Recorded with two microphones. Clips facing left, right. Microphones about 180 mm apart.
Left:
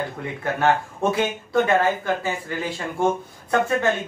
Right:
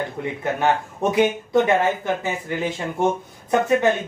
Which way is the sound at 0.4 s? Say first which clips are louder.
Left 1 dB; 15° right (ahead or behind).